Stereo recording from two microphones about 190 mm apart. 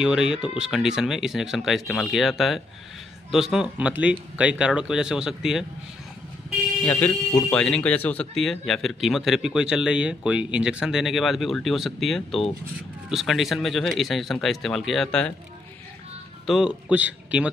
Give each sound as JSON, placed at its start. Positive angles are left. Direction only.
{"t": 0.0, "sound": "speech", "side_deg": -5}
{"t": 6.8, "sound": "speech", "side_deg": 10}
{"t": 16.4, "sound": "speech", "side_deg": -5}